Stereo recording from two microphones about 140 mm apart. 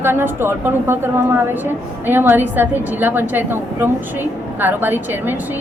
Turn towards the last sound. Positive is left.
turn(degrees=-15)  # may be behind; listen again after turning